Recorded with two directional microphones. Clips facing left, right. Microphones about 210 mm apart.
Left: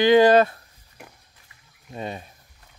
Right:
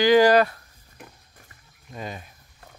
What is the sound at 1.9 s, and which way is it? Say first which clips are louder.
Speech: left 3 dB; 30° left (ahead or behind).